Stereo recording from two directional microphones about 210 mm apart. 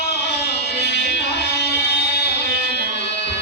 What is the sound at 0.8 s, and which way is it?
Music, 55° left (ahead or behind).